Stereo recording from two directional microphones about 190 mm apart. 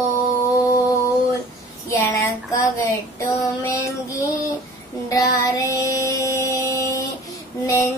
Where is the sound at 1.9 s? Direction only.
15° left (ahead or behind).